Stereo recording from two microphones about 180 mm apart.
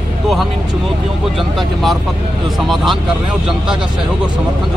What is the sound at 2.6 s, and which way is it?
Speech, centre (ahead or behind).